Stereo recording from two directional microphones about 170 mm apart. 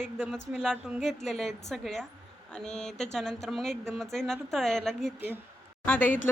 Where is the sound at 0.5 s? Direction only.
Centre (ahead or behind).